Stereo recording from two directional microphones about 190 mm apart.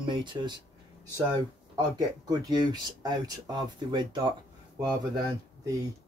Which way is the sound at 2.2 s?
20° right (ahead or behind).